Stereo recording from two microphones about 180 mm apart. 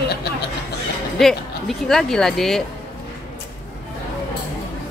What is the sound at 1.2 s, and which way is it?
Speech, centre (ahead or behind).